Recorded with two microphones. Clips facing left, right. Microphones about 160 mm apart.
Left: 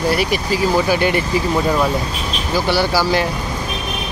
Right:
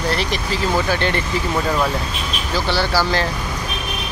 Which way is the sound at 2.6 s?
10° left (ahead or behind).